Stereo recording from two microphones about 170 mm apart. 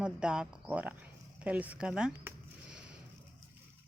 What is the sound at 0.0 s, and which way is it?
Speech, 5° right (ahead or behind).